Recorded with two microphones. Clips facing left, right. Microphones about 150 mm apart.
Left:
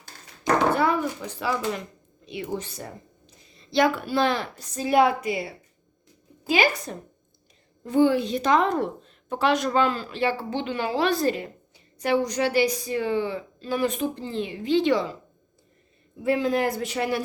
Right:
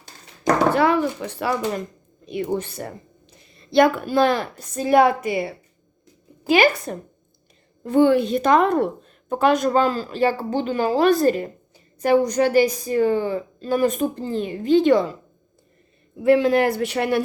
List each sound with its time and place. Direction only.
0.7 s speech: 85° right; by 1.5 s 65° right (ahead or behind)
2.2 s a woman's voice: 50° right (ahead or behind)
16.1 s speech: 70° right (ahead or behind)